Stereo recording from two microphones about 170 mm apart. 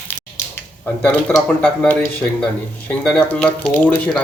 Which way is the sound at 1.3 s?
5° left (ahead or behind).